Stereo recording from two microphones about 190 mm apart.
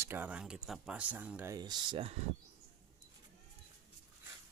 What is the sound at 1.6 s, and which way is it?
Speech, 25° right (ahead or behind).